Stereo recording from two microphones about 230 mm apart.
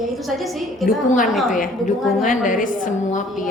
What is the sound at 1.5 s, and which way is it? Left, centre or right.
A woman's voice, left.